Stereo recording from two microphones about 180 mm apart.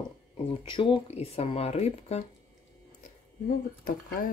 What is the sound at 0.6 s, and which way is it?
Cutlery, 30° left (ahead or behind).